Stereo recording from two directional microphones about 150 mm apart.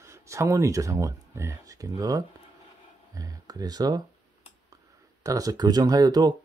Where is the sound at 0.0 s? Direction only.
20° right (ahead or behind).